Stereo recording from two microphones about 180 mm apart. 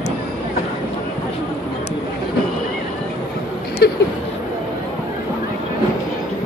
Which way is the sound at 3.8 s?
65° left (ahead or behind).